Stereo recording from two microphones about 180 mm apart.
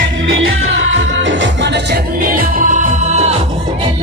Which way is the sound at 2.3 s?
50° right (ahead or behind).